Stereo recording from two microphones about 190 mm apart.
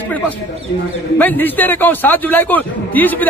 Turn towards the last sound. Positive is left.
turn(degrees=10)  # may be behind; listen again after turning